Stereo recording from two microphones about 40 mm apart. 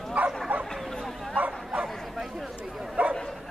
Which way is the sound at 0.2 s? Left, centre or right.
Right.